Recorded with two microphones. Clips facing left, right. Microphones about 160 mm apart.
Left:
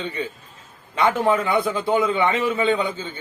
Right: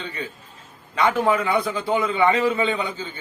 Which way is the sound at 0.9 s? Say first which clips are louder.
Left 1 dB; 25° left (ahead or behind).